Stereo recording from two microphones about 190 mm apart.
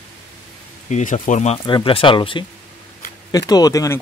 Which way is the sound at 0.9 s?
40° left (ahead or behind).